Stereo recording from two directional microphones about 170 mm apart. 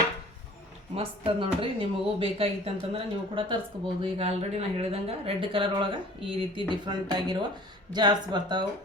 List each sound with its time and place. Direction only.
0.9 s speech: 30° right (ahead or behind)